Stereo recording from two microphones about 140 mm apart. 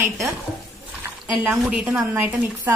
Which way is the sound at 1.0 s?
15° right (ahead or behind).